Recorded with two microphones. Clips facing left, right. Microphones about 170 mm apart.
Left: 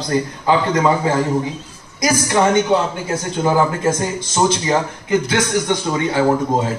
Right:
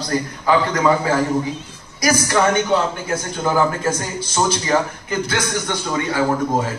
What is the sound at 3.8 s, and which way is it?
A man's voice, 20° left (ahead or behind).